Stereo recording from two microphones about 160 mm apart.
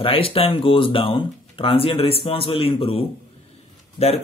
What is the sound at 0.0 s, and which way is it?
Speech, 35° left (ahead or behind).